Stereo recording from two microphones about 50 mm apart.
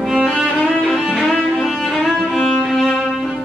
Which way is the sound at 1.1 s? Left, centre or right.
Centre.